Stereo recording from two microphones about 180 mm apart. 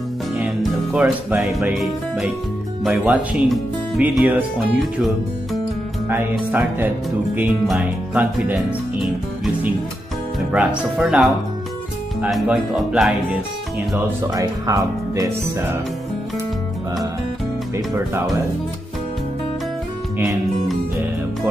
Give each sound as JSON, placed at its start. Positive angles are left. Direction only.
{"t": 0.4, "sound": "music", "side_deg": -5}
{"t": 2.8, "sound": "speech", "side_deg": -5}
{"t": 13.9, "sound": "speech", "side_deg": -15}
{"t": 17.7, "sound": "music", "side_deg": -15}